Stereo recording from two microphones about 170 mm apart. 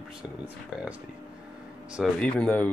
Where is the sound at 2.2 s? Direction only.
10° left (ahead or behind).